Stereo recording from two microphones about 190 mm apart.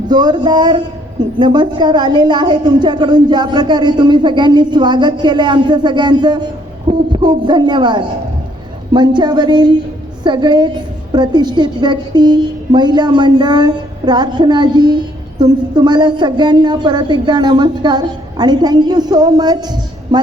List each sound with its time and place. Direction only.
0.1 s a woman's voice: 20° right (ahead or behind)